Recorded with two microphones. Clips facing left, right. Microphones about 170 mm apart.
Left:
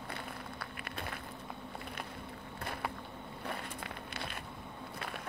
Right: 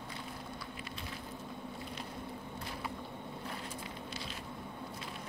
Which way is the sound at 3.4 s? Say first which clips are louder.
Left 5 dB; 60° left (ahead or behind).